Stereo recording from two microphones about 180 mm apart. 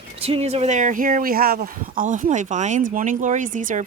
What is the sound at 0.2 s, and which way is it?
Speech, 35° right (ahead or behind).